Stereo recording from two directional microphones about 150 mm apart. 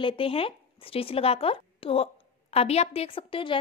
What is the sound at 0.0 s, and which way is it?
A woman's voice, 40° left (ahead or behind).